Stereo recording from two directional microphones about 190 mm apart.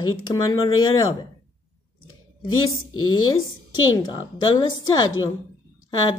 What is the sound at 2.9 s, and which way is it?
Speech, 90° left.